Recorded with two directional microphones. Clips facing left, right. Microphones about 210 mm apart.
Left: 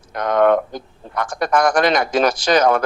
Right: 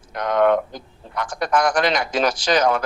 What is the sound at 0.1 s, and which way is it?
A man's voice, 50° left (ahead or behind).